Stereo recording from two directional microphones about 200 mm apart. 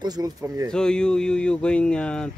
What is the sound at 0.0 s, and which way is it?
Speech, 20° right (ahead or behind).